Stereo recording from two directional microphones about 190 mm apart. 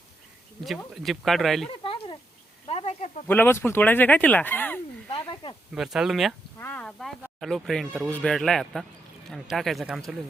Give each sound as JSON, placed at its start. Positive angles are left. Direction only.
{"t": 1.0, "sound": "speech", "side_deg": 0}
{"t": 1.8, "sound": "a sound", "side_deg": 25}
{"t": 3.2, "sound": "speech", "side_deg": 10}
{"t": 5.2, "sound": "snake", "side_deg": 25}
{"t": 5.7, "sound": "speech", "side_deg": 0}
{"t": 6.6, "sound": "a sound", "side_deg": 10}
{"t": 7.2, "sound": "speech", "side_deg": 0}